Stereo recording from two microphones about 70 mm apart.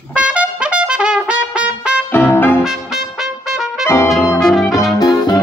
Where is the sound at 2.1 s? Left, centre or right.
Left.